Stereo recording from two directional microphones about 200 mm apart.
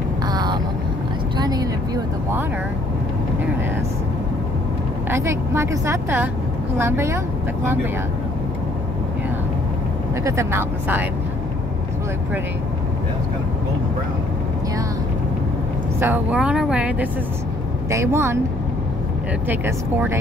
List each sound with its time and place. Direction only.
0.3 s vehicle: 20° right (ahead or behind)
5.1 s a woman's voice: 15° right (ahead or behind)
10.2 s a woman's voice: 15° right (ahead or behind)
16.0 s a woman's voice: 10° right (ahead or behind)
19.5 s a woman's voice: 10° right (ahead or behind)